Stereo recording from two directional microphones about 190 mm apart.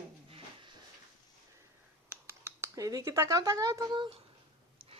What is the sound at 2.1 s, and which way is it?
Speech, 10° right (ahead or behind).